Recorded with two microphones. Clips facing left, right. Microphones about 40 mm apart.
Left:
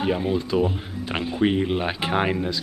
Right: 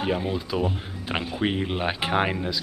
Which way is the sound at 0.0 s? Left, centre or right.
Centre.